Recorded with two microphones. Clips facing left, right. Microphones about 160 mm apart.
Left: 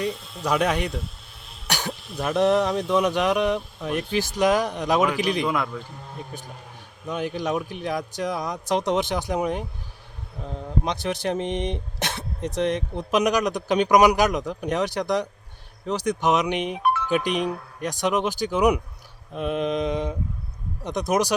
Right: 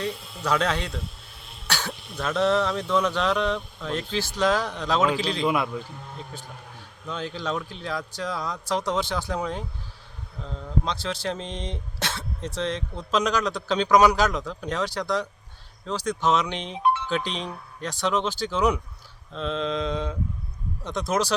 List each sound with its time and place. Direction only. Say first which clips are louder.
0.1 s speech: left 2 dB; centre (ahead or behind)
0.4 s speech: left 2 dB; 15° left (ahead or behind)
1.6 s throat clearing: left 1 dB; 15° left (ahead or behind)
1.9 s throat clearing: left 3 dB; centre (ahead or behind)
2.1 s speech: left 3 dB; 20° left (ahead or behind)
5.5 s a man's voice: right 1 dB; 15° right (ahead or behind)
6.1 s speech: left 2 dB; 15° left (ahead or behind)